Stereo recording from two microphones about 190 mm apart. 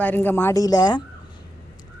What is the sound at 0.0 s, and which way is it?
Speech, 10° left (ahead or behind).